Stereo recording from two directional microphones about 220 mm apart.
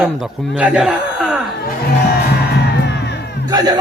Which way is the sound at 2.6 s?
50° left (ahead or behind).